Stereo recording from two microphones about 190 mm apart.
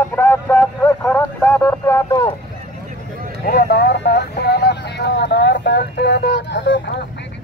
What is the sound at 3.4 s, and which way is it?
Speech, 55° left (ahead or behind).